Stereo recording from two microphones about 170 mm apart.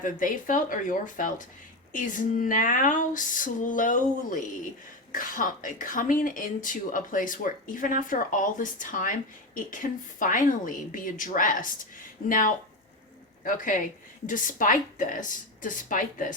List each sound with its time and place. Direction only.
0.0 s speech: 50° left (ahead or behind)